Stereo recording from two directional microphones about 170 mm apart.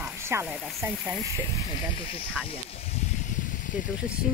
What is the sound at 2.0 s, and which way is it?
Speech, 35° left (ahead or behind).